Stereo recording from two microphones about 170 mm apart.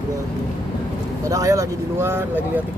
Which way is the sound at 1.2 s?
20° right (ahead or behind).